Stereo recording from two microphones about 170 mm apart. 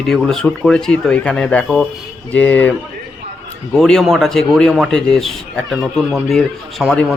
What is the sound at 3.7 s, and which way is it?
Speech, 5° left (ahead or behind).